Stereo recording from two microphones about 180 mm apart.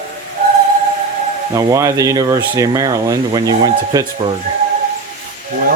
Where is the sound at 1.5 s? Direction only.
20° right (ahead or behind).